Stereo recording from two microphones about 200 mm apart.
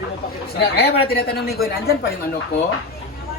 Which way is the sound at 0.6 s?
55° left (ahead or behind).